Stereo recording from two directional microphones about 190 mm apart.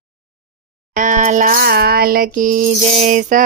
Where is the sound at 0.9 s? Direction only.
40° right (ahead or behind).